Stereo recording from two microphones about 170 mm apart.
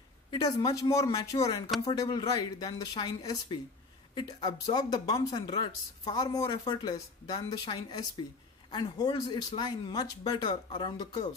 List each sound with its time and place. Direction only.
0.3 s speech: 25° left (ahead or behind)